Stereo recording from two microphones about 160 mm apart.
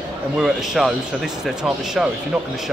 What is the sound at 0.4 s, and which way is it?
Speech, centre (ahead or behind).